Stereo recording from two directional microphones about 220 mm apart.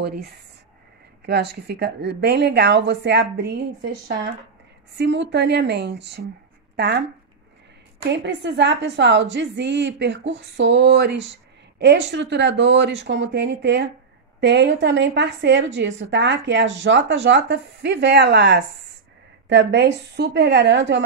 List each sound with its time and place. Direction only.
0.0 s a woman's voice: 50° right (ahead or behind)
8.1 s a woman's voice: 50° right (ahead or behind)